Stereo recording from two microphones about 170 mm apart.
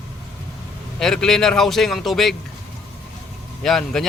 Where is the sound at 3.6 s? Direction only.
Centre (ahead or behind).